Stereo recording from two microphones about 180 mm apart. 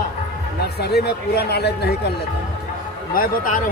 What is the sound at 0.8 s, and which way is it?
A man's voice, 65° left (ahead or behind).